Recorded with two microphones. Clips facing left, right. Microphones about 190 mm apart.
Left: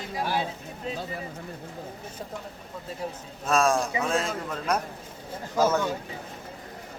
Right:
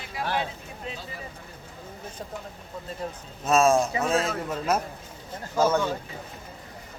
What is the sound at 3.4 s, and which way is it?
A man's voice, 5° right (ahead or behind).